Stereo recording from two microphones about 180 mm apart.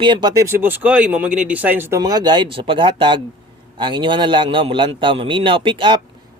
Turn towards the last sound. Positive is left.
turn(degrees=-25)  # may be behind; listen again after turning